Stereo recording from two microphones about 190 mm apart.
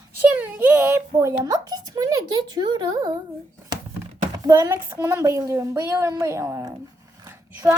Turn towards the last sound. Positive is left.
turn(degrees=-15)  # may be behind; listen again after turning